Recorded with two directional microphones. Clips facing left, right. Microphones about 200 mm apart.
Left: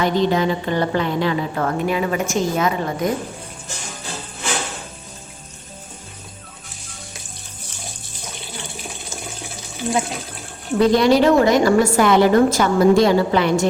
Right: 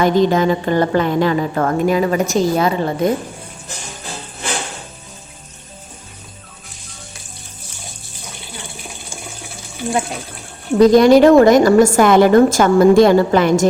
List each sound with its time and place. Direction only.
0.0 s a woman's voice: 45° right (ahead or behind); by 3.1 s 30° right (ahead or behind)
10.8 s a woman's voice: 40° right (ahead or behind)